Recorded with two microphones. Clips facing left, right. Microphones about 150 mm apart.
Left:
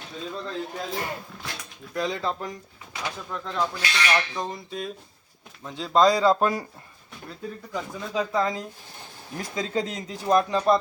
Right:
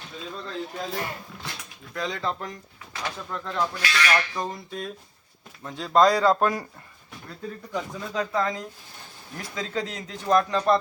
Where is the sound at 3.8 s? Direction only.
25° left (ahead or behind).